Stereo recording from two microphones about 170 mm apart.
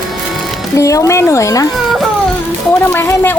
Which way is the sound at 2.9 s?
15° left (ahead or behind).